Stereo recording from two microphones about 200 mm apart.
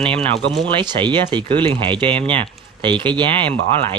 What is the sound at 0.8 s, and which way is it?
Speech, 20° right (ahead or behind).